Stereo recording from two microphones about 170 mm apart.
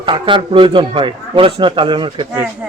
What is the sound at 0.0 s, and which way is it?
A man's voice, 30° right (ahead or behind).